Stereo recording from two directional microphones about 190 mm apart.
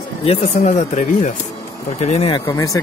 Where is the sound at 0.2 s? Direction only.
30° left (ahead or behind).